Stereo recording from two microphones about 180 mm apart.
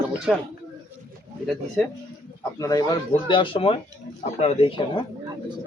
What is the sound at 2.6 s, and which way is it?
Speech, 20° left (ahead or behind).